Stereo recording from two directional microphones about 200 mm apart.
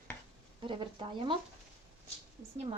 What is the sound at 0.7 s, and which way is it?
Speech, 25° right (ahead or behind).